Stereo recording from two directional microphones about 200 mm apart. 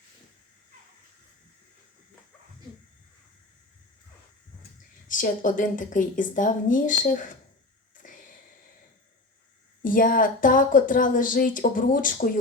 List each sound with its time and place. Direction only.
5.0 s a woman's voice: 40° left (ahead or behind)
7.9 s a sound: 40° left (ahead or behind)
9.8 s speech: 45° left (ahead or behind)